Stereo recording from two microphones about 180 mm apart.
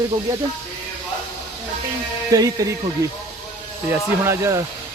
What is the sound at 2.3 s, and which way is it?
Speech, 20° right (ahead or behind).